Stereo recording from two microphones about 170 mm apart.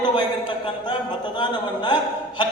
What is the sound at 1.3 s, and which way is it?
Speech, 25° left (ahead or behind).